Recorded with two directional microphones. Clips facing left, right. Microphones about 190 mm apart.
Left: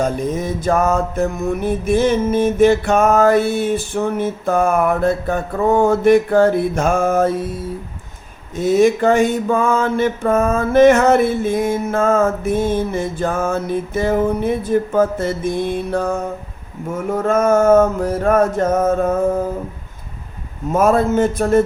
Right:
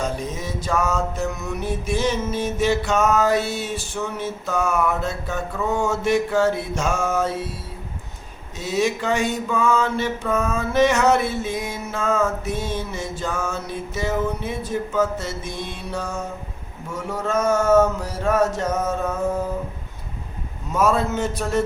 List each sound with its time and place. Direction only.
0.0 s mantra: 50° left (ahead or behind)
8.5 s mantra: 50° left (ahead or behind)
20.7 s mantra: 50° left (ahead or behind)